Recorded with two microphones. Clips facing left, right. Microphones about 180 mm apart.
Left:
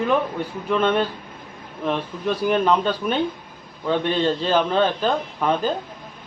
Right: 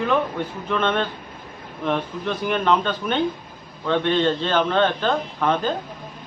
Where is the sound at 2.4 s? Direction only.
5° left (ahead or behind).